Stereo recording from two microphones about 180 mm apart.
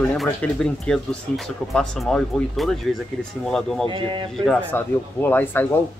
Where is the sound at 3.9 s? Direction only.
25° right (ahead or behind).